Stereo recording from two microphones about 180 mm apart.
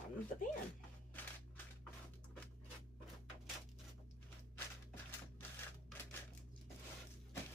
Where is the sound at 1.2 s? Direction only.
10° left (ahead or behind).